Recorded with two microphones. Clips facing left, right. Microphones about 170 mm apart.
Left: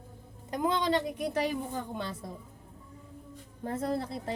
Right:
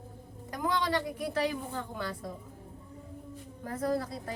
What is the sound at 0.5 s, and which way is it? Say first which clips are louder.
Speech: left 2 dB; 20° left (ahead or behind).